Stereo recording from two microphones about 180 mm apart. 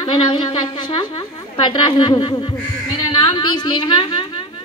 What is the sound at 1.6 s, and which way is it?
A woman's voice, 25° left (ahead or behind).